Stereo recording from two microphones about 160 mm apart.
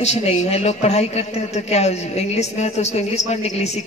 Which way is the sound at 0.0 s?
45° left (ahead or behind).